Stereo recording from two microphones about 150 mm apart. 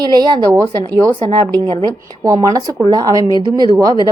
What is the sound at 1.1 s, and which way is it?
A woman's voice, 35° right (ahead or behind).